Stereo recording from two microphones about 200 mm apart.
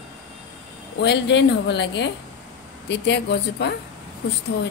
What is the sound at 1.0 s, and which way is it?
A woman's voice, 60° left (ahead or behind).